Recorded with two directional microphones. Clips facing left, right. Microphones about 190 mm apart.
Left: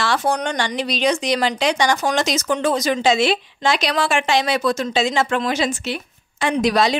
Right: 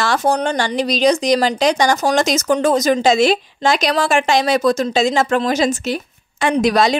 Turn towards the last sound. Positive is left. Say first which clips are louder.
# right 3 dB
turn(degrees=-45)  # may be behind; listen again after turning